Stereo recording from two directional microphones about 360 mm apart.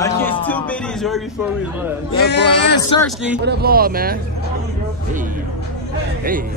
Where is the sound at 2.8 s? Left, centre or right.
Centre.